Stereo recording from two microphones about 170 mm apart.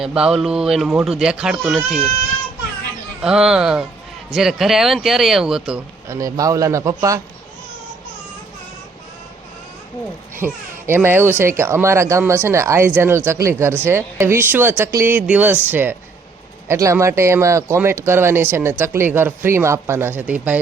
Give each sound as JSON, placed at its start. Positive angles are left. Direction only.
{"t": 0.0, "sound": "speech", "side_deg": -5}
{"t": 3.2, "sound": "speech", "side_deg": -5}
{"t": 6.1, "sound": "a man's voice", "side_deg": -20}
{"t": 10.4, "sound": "speech", "side_deg": -10}